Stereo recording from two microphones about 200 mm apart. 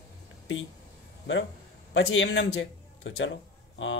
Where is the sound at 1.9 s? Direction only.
70° left (ahead or behind).